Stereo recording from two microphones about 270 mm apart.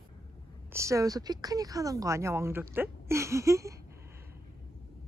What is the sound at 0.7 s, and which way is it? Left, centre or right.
Speech, centre.